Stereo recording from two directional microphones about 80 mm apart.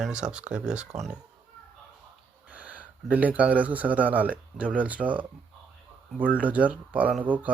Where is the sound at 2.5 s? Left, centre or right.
Centre.